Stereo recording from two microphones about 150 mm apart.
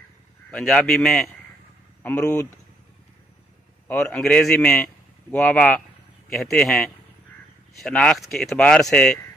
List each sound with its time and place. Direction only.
0.5 s speech: 5° left (ahead or behind)
2.0 s speech: 20° left (ahead or behind)
3.8 s a man's voice: 5° left (ahead or behind)